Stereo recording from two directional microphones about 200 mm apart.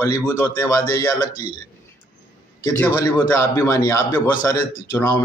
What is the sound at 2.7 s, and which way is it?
A man's voice, 10° left (ahead or behind).